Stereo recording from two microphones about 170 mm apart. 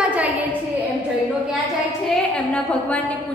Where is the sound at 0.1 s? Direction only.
10° right (ahead or behind).